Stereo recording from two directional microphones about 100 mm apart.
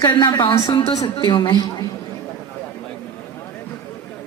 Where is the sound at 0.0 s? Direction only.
45° left (ahead or behind).